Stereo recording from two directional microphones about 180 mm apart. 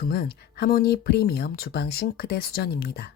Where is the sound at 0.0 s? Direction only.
60° left (ahead or behind).